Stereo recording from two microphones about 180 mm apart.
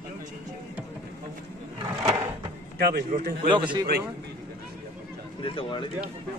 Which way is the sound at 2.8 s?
60° right (ahead or behind).